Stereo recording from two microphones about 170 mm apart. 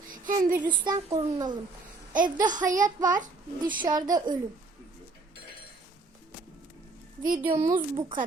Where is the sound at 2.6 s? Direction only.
50° right (ahead or behind).